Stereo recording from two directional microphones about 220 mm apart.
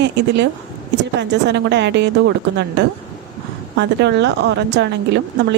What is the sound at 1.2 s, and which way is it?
Speech, 50° right (ahead or behind).